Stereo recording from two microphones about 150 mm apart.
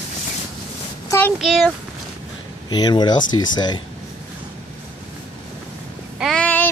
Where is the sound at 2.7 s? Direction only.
30° left (ahead or behind).